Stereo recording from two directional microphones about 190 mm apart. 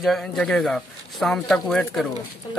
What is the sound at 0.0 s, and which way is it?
Speech, centre (ahead or behind).